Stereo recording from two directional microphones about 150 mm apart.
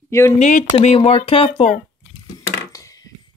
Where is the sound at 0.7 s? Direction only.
45° left (ahead or behind).